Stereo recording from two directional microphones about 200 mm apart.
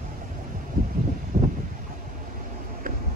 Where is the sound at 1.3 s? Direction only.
40° right (ahead or behind).